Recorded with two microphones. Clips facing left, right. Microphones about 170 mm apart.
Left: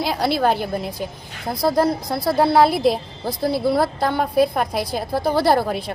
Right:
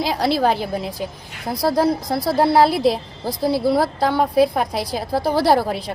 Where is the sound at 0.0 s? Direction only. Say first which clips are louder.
Right 1 dB; centre (ahead or behind).